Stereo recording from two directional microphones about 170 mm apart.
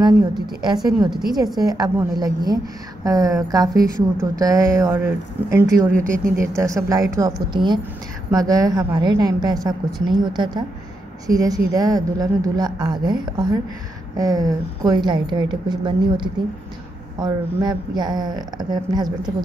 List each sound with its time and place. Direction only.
1.0 s a woman's voice: 25° right (ahead or behind)
5.9 s speech: 50° right (ahead or behind)
6.5 s a woman's voice: 20° right (ahead or behind)